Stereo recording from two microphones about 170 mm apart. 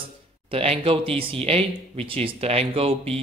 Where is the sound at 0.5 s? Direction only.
35° right (ahead or behind).